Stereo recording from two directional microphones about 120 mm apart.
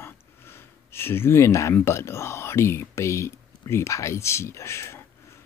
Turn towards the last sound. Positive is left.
turn(degrees=20)  # may be behind; listen again after turning